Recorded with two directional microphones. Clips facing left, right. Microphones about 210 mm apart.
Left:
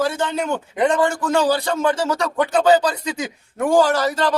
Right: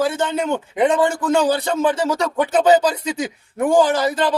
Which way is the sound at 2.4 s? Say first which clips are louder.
Right 1 dB; 20° right (ahead or behind).